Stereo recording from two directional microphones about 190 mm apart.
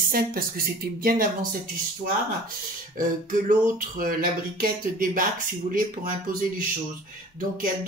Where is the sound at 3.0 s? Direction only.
45° right (ahead or behind).